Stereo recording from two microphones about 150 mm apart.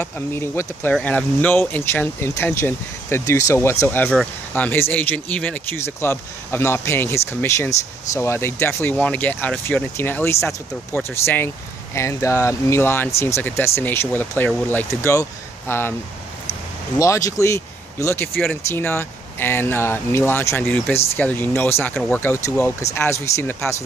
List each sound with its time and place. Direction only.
0.0 s speech: 15° left (ahead or behind)
4.1 s speech: centre (ahead or behind)
4.6 s speech: 15° left (ahead or behind)
17.0 s speech: 20° left (ahead or behind)